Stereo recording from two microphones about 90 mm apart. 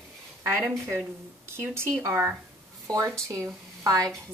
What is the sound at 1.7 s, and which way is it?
A woman's voice, 30° right (ahead or behind).